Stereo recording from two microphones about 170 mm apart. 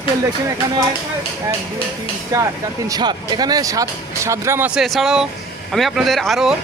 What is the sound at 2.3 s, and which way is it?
Speech, 20° right (ahead or behind).